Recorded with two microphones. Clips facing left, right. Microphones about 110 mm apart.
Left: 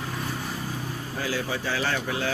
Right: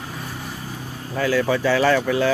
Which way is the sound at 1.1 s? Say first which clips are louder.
Right 10 dB; 65° right (ahead or behind).